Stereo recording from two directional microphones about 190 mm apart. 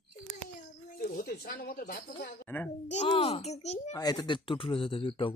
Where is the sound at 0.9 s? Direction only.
50° left (ahead or behind).